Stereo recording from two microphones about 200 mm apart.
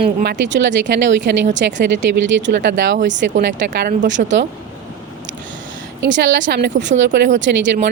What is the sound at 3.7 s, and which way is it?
Speech, 45° right (ahead or behind).